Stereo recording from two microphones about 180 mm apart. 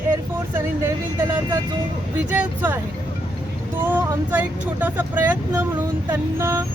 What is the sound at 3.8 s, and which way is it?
Speech, 10° right (ahead or behind).